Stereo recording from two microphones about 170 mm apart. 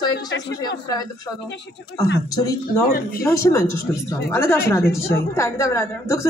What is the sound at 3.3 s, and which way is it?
Speech, 15° left (ahead or behind).